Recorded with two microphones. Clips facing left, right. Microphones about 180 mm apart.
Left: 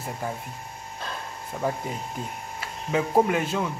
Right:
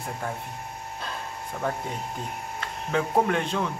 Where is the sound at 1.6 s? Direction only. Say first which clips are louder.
Left 2 dB; 5° left (ahead or behind).